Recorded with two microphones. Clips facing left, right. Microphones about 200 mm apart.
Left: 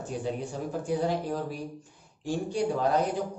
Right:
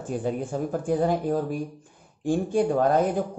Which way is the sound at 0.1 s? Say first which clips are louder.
Right 6 dB; 50° right (ahead or behind).